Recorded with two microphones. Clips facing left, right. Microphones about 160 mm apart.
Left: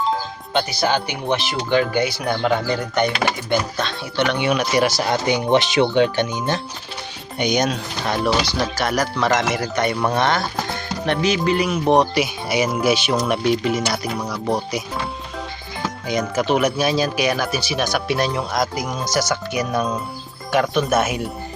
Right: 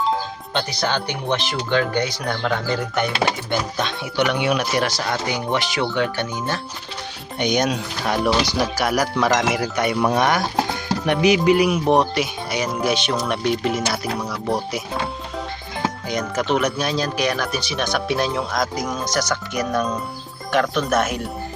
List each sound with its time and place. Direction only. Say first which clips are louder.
0.5 s speech: left 3 dB; 10° left (ahead or behind)
2.6 s speech: left 2 dB; centre (ahead or behind)
3.8 s speech: even; 15° right (ahead or behind)
4.3 s speech: left 3 dB; centre (ahead or behind)
4.9 s speech: left 4 dB; 30° left (ahead or behind)
7.3 s speech: even; centre (ahead or behind)
16.0 s speech: left 4 dB; centre (ahead or behind)